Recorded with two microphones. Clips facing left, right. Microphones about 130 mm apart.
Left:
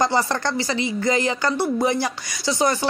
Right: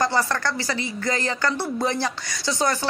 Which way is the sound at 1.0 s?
15° left (ahead or behind).